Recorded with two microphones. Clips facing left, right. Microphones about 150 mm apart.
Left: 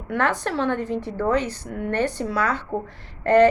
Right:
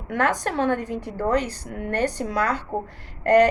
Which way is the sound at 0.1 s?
45° right (ahead or behind).